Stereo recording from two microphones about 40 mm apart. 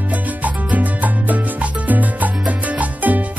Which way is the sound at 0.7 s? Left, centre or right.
Right.